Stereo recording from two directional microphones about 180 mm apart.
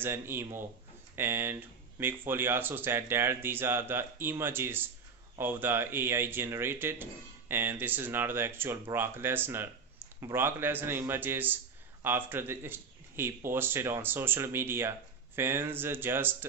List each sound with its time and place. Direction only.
0.0 s speech: 15° right (ahead or behind)